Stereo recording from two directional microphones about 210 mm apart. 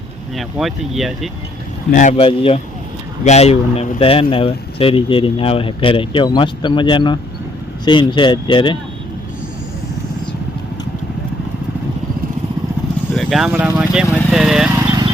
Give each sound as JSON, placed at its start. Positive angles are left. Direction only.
{"t": 0.3, "sound": "speech", "side_deg": 0}
{"t": 1.9, "sound": "speech", "side_deg": 35}
{"t": 13.1, "sound": "speech", "side_deg": 0}